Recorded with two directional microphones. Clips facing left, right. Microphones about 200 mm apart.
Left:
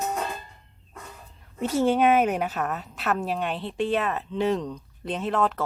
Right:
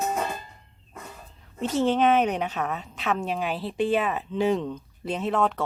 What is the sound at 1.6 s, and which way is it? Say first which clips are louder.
A woman's voice: left 1 dB; 10° left (ahead or behind).